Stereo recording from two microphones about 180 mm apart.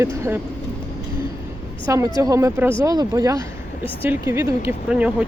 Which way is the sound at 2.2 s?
15° right (ahead or behind).